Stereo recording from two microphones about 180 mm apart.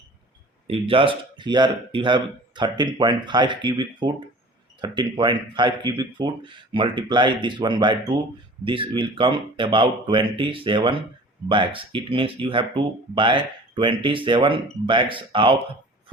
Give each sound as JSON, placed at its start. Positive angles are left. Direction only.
{"t": 0.7, "sound": "speech", "side_deg": -30}